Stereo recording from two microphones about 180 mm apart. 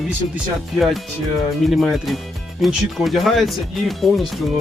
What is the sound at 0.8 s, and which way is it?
Speech, centre (ahead or behind).